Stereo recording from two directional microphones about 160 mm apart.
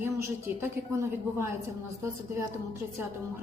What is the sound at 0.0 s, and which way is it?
Speech, 15° right (ahead or behind).